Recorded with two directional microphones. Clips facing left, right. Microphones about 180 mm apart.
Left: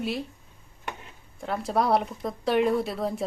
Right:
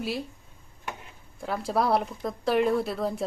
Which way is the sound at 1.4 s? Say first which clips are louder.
Left 1 dB; centre (ahead or behind).